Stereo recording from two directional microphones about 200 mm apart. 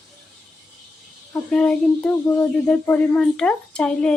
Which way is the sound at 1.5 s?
5° left (ahead or behind).